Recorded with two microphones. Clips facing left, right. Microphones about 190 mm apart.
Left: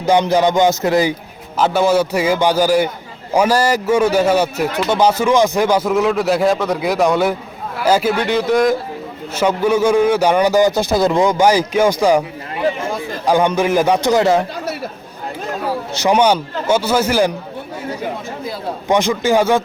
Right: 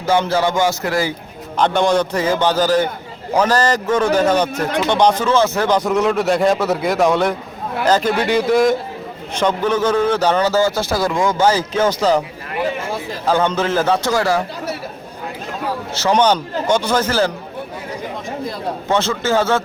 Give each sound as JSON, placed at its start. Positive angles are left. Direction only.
{"t": 0.0, "sound": "speech", "side_deg": 15}
{"t": 1.5, "sound": "a man's voice", "side_deg": 5}
{"t": 8.2, "sound": "a man's voice", "side_deg": -10}
{"t": 9.3, "sound": "a man's voice", "side_deg": 10}
{"t": 13.2, "sound": "a man's voice", "side_deg": 15}
{"t": 16.0, "sound": "a man's voice", "side_deg": 10}
{"t": 18.9, "sound": "a man's voice", "side_deg": 15}